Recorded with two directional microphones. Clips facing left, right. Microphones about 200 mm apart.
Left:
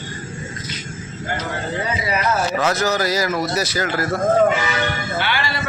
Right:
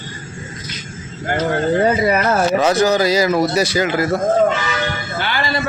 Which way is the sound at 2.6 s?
15° right (ahead or behind).